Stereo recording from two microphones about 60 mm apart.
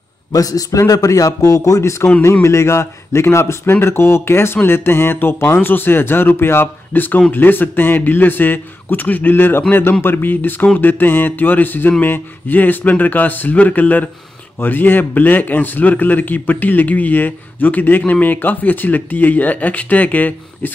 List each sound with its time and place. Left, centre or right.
0.3 s a man's voice: left